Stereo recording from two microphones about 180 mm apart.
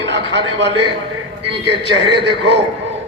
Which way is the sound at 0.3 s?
75° right (ahead or behind).